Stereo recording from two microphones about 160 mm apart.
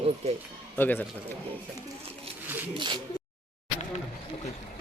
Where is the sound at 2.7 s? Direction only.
30° right (ahead or behind).